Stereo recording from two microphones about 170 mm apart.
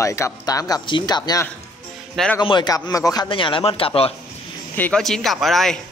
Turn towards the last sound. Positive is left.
turn(degrees=0)  # may be behind; listen again after turning